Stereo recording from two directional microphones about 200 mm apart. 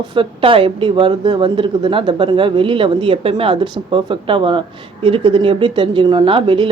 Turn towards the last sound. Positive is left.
turn(degrees=-25)  # may be behind; listen again after turning